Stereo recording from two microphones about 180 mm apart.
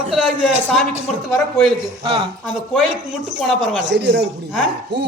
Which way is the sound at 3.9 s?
70° right (ahead or behind).